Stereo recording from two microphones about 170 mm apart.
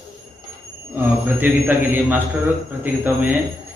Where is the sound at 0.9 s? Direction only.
10° right (ahead or behind).